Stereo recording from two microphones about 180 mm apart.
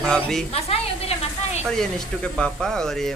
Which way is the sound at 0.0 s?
5° left (ahead or behind).